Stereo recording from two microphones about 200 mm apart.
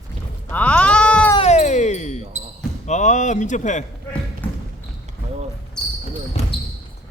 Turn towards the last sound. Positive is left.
turn(degrees=30)  # may be behind; listen again after turning